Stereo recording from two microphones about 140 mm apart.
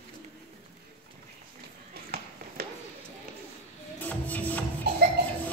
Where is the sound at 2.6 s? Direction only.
90° right.